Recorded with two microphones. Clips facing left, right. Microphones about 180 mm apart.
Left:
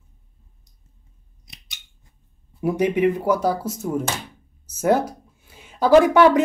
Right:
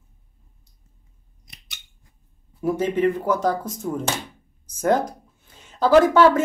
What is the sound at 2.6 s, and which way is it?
Speech, 15° left (ahead or behind).